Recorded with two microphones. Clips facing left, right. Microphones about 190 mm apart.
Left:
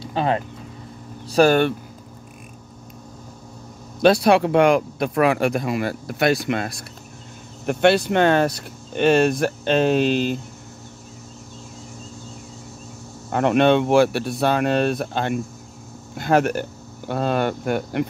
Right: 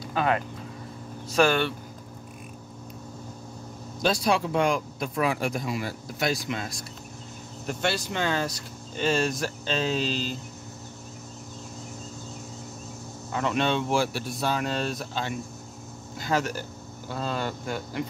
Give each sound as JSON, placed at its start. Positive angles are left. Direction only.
{"t": 0.0, "sound": "a sound", "side_deg": 30}
{"t": 1.3, "sound": "speech", "side_deg": 40}
{"t": 4.0, "sound": "speech", "side_deg": 65}
{"t": 13.3, "sound": "speech", "side_deg": 60}